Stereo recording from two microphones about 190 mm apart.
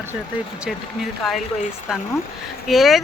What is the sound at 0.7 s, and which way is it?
Speech, centre (ahead or behind).